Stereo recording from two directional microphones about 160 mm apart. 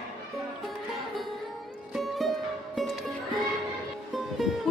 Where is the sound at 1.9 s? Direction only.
Centre (ahead or behind).